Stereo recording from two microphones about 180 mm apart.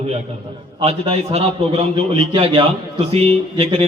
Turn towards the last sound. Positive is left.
turn(degrees=-30)  # may be behind; listen again after turning